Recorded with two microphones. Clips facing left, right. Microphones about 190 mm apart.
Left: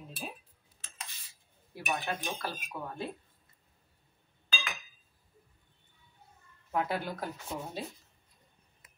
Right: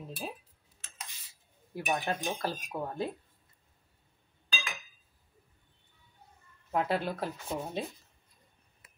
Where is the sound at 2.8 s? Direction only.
35° right (ahead or behind).